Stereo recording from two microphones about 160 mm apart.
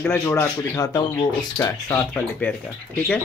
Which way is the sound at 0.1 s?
15° left (ahead or behind).